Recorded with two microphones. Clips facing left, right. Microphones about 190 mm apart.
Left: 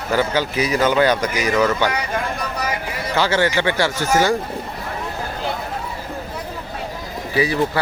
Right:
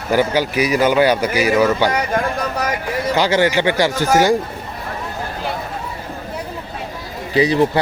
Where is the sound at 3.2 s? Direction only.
15° right (ahead or behind).